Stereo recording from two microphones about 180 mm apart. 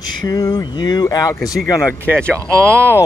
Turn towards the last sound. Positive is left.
turn(degrees=10)  # may be behind; listen again after turning